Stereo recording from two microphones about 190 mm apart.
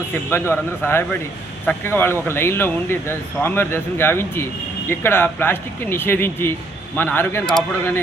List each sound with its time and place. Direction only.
0.1 s speech: 15° left (ahead or behind)